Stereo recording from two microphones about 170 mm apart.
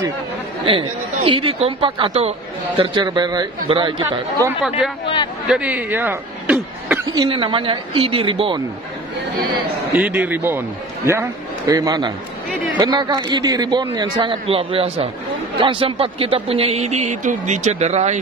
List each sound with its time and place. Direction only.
0.7 s a man's voice: 30° right (ahead or behind)
4.5 s speech: 5° right (ahead or behind)
5.0 s speech: 30° left (ahead or behind)
5.5 s speech: 10° right (ahead or behind)
7.1 s a man's voice: 25° right (ahead or behind)
9.9 s a man's voice: 10° right (ahead or behind); by 18.2 s 40° right (ahead or behind)